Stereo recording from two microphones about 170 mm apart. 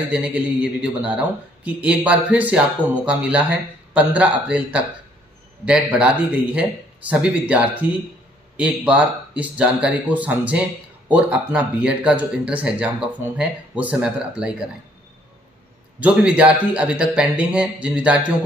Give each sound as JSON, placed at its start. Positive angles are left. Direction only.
{"t": 0.1, "sound": "speech", "side_deg": -5}
{"t": 16.0, "sound": "speech", "side_deg": -5}